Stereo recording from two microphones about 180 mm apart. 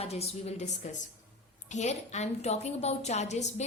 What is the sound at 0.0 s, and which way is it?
A woman's voice, 35° left (ahead or behind).